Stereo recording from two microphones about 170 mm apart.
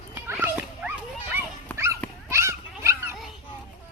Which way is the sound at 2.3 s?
15° right (ahead or behind).